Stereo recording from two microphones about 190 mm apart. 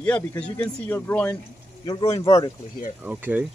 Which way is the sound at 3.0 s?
10° right (ahead or behind).